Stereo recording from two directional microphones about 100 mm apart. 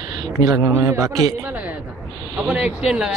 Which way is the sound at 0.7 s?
25° right (ahead or behind).